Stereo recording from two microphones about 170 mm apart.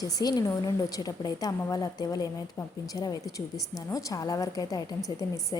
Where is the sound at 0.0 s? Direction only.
20° left (ahead or behind).